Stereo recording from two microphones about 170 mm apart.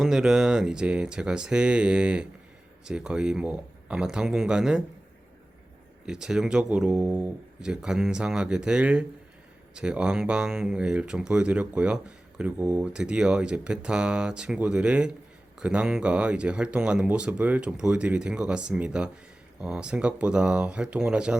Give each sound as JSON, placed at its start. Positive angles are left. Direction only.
{"t": 0.0, "sound": "speech", "side_deg": -5}
{"t": 6.1, "sound": "speech", "side_deg": -5}